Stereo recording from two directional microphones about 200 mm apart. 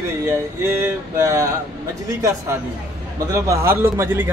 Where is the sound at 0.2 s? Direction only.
15° right (ahead or behind).